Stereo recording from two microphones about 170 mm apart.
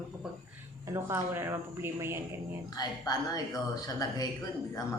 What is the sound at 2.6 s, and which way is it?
Speech, 25° left (ahead or behind).